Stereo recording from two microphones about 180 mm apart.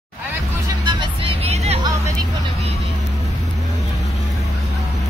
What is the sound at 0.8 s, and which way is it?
Music, 25° right (ahead or behind).